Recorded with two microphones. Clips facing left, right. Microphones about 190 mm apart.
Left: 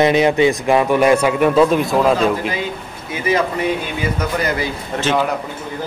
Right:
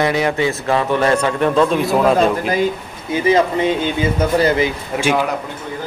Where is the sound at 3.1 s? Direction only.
25° right (ahead or behind).